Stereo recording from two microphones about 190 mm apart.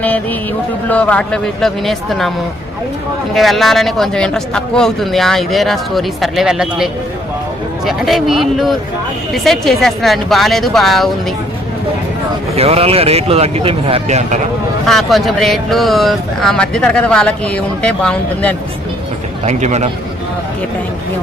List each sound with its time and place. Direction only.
0.0 s speech: 10° left (ahead or behind)
3.3 s speech: centre (ahead or behind)
12.5 s speech: 30° right (ahead or behind)
14.8 s speech: centre (ahead or behind)
19.5 s speech: 35° right (ahead or behind)